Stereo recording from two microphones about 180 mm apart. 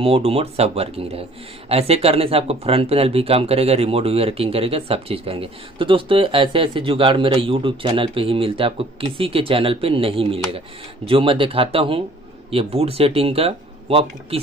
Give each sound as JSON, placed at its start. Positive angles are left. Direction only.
{"t": 0.0, "sound": "speech", "side_deg": -35}